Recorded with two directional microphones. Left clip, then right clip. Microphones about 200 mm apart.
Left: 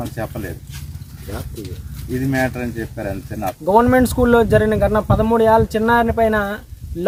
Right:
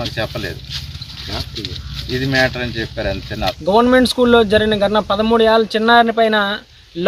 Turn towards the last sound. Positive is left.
turn(degrees=10)  # may be behind; listen again after turning